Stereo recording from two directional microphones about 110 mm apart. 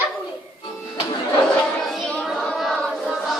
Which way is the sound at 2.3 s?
Centre (ahead or behind).